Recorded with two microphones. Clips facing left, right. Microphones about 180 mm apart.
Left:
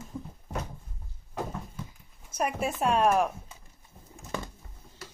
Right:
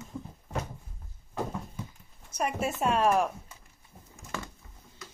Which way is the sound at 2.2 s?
Centre (ahead or behind).